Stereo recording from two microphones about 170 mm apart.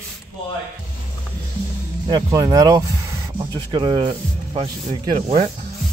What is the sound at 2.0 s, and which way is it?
Speech, 25° right (ahead or behind).